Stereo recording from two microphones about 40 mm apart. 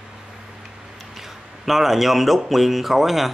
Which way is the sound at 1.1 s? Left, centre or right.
Centre.